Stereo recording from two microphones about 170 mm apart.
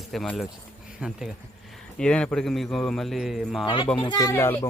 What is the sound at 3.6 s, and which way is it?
Speech, 30° left (ahead or behind).